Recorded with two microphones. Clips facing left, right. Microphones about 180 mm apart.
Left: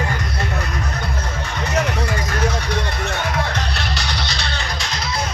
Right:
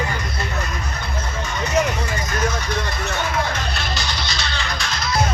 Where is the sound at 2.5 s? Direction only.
60° left (ahead or behind).